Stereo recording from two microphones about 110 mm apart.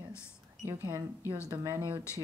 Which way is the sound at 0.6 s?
20° right (ahead or behind).